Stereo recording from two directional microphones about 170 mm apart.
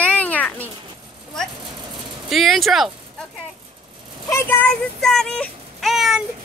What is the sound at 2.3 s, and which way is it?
Speech, centre (ahead or behind).